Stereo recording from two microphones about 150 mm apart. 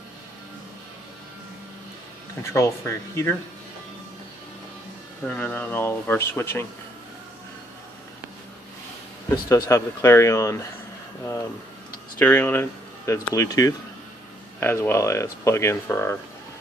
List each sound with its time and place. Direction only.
2.5 s speech: 20° left (ahead or behind)
5.3 s speech: 10° left (ahead or behind)
9.3 s speech: 25° left (ahead or behind)
12.2 s speech: 10° left (ahead or behind)